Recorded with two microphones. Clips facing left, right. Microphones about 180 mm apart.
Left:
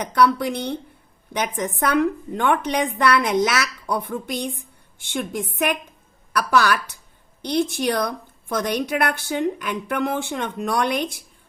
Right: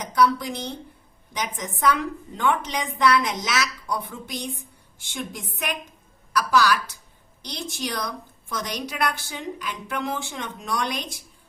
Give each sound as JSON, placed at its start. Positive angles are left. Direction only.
{"t": 0.0, "sound": "a woman's voice", "side_deg": 60}